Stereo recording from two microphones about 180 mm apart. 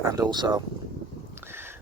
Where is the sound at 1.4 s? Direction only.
15° right (ahead or behind).